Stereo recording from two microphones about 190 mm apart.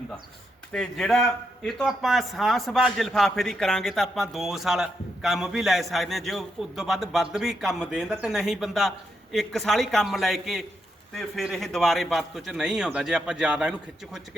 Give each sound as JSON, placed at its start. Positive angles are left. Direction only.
{"t": 0.7, "sound": "speech", "side_deg": 5}